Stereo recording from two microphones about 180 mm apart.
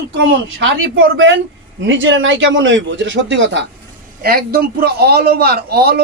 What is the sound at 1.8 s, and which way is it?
A man's voice, 90° right.